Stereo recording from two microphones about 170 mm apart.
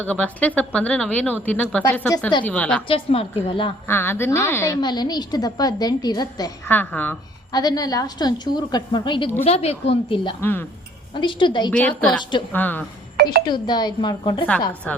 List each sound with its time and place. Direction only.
0.0 s speech: 10° left (ahead or behind)
2.4 s speech: 10° left (ahead or behind)
2.8 s a woman's voice: 35° left (ahead or behind)
3.8 s a woman's voice: 15° left (ahead or behind)
6.7 s speech: 10° left (ahead or behind)
7.5 s a woman's voice: 25° left (ahead or behind)
10.4 s speech: 10° left (ahead or behind)
11.1 s a woman's voice: 30° left (ahead or behind)
11.7 s a woman's voice: 5° left (ahead or behind)
13.4 s a woman's voice: 25° left (ahead or behind)
14.9 s speech: 10° left (ahead or behind)